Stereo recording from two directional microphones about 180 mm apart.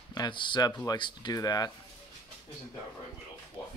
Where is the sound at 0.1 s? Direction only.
25° left (ahead or behind).